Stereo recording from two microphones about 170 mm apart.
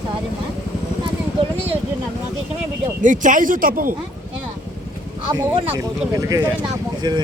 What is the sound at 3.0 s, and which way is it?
Speech, 50° right (ahead or behind).